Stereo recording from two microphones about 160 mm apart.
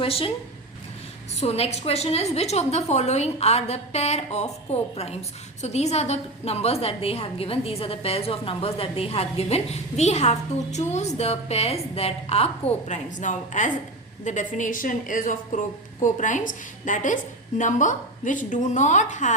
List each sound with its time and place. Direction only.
0.0 s a woman's voice: 35° left (ahead or behind)
1.4 s a woman's voice: 40° left (ahead or behind)